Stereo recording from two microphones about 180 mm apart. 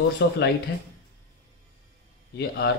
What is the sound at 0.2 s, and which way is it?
Speech, 65° left (ahead or behind).